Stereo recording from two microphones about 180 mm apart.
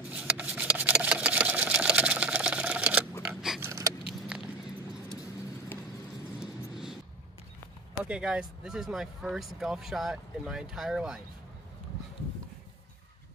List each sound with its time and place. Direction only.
0.1 s sewing machine: 5° right (ahead or behind)
3.6 s vehicle: 15° right (ahead or behind)
6.4 s vehicle: 5° right (ahead or behind)
8.0 s speech: 5° right (ahead or behind)